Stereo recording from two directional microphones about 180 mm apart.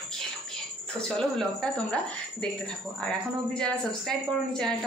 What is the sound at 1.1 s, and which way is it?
Speech, 5° left (ahead or behind).